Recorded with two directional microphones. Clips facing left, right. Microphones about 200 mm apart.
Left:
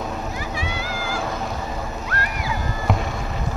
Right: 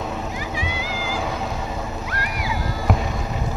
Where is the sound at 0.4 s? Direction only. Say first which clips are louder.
Even; 15° right (ahead or behind).